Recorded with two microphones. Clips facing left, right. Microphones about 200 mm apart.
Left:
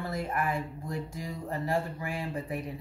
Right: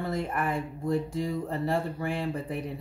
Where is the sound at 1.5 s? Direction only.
30° right (ahead or behind).